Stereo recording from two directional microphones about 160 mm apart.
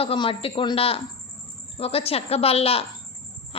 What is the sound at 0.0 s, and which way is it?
A woman's voice, 35° left (ahead or behind).